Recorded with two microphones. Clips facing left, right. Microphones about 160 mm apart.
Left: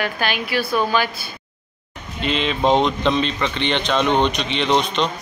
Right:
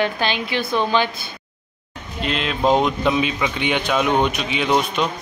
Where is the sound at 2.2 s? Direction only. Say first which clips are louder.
Left 1 dB; centre (ahead or behind).